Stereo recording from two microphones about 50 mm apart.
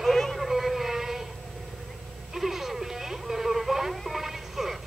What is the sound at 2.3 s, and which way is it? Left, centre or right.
Music, centre.